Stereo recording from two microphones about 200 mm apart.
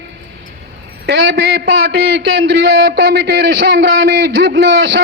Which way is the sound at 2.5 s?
60° right (ahead or behind).